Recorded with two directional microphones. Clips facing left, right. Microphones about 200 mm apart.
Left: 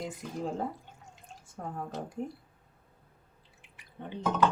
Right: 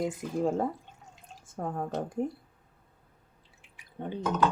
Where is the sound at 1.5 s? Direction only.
50° right (ahead or behind).